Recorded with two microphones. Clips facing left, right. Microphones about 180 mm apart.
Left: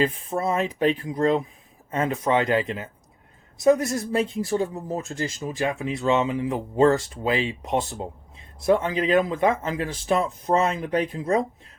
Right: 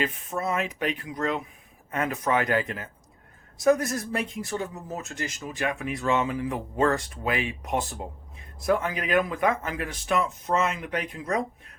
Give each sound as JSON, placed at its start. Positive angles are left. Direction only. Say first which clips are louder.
{"t": 0.0, "sound": "speech", "louder": "left 5 dB", "side_deg": 30}